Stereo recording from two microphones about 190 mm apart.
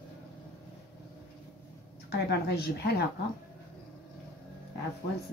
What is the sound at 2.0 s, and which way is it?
Speech, 60° left (ahead or behind).